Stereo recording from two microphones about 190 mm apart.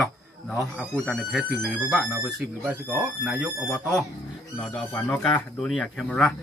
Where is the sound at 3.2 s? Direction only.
5° right (ahead or behind).